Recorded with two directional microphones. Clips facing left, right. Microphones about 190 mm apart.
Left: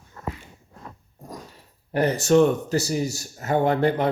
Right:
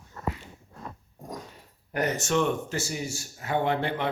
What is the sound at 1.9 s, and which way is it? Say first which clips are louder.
Speech: left 8 dB; 30° left (ahead or behind).